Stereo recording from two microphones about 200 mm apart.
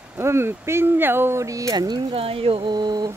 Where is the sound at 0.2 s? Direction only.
10° right (ahead or behind).